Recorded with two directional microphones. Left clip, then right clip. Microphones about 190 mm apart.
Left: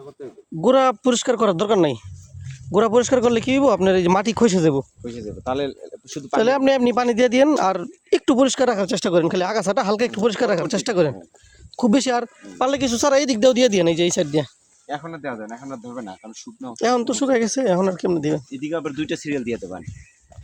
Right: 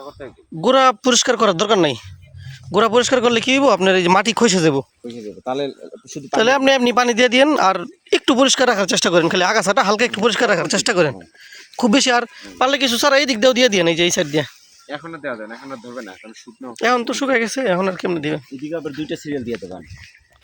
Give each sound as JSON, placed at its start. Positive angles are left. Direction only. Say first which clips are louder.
{"t": 0.6, "sound": "a man's voice", "louder": "right 3 dB", "side_deg": 15}
{"t": 5.5, "sound": "speech", "louder": "right 1 dB", "side_deg": -40}
{"t": 6.3, "sound": "a man's voice", "louder": "right 3 dB", "side_deg": 10}
{"t": 14.8, "sound": "speech", "louder": "right 1 dB", "side_deg": 65}
{"t": 16.2, "sound": "speech", "louder": "even", "side_deg": 40}
{"t": 16.7, "sound": "speech", "louder": "right 2 dB", "side_deg": 15}
{"t": 18.7, "sound": "speech", "louder": "even", "side_deg": -10}